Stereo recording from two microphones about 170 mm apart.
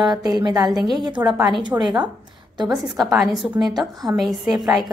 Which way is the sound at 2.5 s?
25° right (ahead or behind).